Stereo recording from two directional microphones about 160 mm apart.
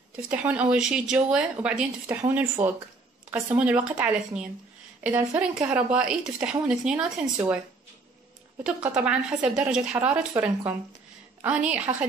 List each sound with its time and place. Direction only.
0.3 s speech: 10° right (ahead or behind)
8.6 s speech: 5° right (ahead or behind)